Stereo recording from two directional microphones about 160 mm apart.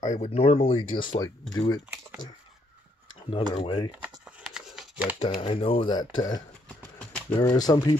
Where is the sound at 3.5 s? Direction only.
35° left (ahead or behind).